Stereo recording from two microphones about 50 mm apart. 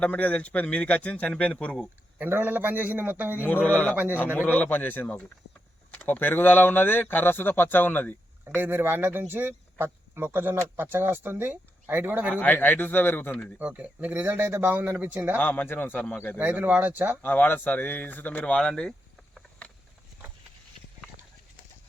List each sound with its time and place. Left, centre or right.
0.0 s speech: left
2.3 s a man's voice: right
4.4 s speech: left
8.4 s speech: right
12.4 s a man's voice: left
13.6 s speech: right
14.1 s a man's voice: right
15.4 s speech: left
16.0 s speech: left
16.4 s a man's voice: right
17.2 s speech: left; by 19.4 s centre